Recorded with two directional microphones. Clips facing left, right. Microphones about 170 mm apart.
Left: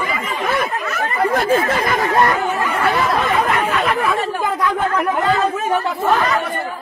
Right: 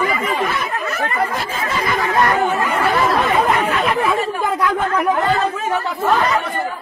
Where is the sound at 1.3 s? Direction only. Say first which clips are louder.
Left 7 dB; 55° left (ahead or behind).